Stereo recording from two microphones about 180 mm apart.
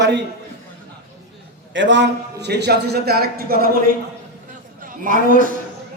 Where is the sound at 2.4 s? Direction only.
70° right (ahead or behind).